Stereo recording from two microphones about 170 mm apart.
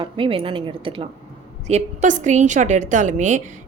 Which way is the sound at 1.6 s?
45° right (ahead or behind).